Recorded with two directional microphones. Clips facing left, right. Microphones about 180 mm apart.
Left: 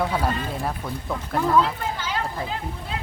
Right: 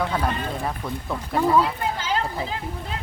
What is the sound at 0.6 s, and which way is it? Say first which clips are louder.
Speech: even; centre (ahead or behind).